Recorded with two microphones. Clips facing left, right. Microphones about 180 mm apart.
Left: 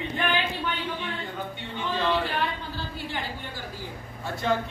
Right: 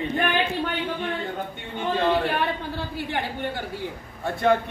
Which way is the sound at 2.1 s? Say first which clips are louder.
Right 4 dB; 60° right (ahead or behind).